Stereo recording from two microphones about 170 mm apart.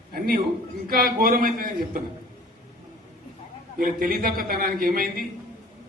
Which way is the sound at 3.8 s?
60° right (ahead or behind).